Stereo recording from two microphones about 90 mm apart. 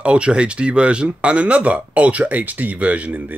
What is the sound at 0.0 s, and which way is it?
Speech, 10° right (ahead or behind).